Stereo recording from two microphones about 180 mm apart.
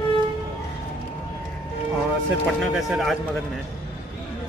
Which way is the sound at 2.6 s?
Centre (ahead or behind).